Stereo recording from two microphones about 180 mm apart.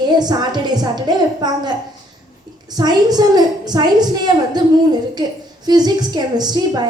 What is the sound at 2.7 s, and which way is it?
A woman's voice, 20° right (ahead or behind).